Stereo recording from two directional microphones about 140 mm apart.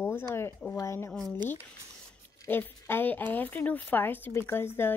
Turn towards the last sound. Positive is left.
turn(degrees=15)  # may be behind; listen again after turning